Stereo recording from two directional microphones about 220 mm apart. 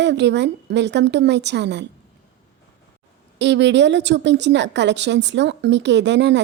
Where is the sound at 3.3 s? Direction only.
50° right (ahead or behind).